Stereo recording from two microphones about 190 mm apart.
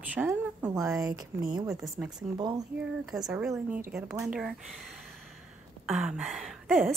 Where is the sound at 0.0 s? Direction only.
10° right (ahead or behind).